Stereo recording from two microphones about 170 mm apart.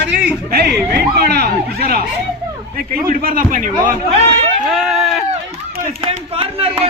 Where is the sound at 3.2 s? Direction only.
55° right (ahead or behind).